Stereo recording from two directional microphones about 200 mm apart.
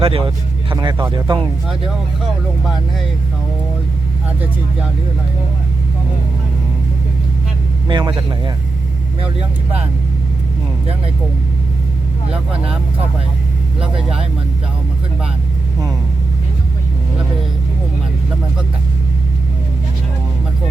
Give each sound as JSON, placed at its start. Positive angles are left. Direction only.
{"t": 0.0, "sound": "speech", "side_deg": -25}
{"t": 7.9, "sound": "speech", "side_deg": -25}